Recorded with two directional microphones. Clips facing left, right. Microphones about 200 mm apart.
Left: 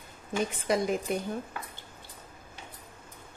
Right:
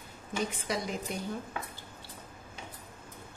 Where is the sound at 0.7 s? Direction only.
55° left (ahead or behind).